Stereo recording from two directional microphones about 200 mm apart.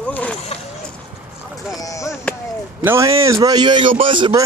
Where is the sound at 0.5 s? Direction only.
30° left (ahead or behind).